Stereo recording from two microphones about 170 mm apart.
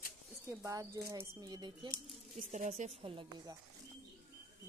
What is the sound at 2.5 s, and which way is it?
Speech, 45° right (ahead or behind).